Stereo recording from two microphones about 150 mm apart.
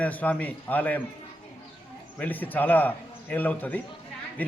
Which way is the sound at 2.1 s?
10° left (ahead or behind).